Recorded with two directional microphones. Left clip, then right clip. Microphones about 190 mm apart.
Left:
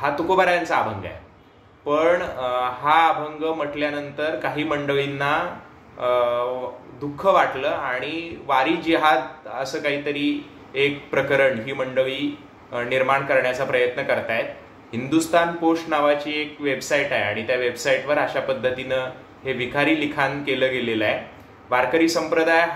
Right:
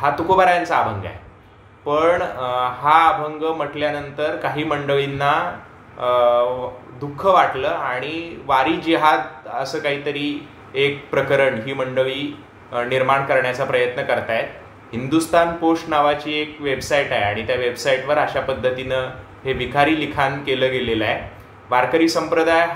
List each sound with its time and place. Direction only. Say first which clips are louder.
0.0 s speech: right 4 dB; 5° right (ahead or behind)